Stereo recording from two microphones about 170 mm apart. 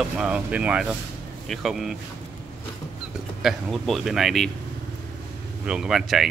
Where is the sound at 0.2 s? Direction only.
10° right (ahead or behind).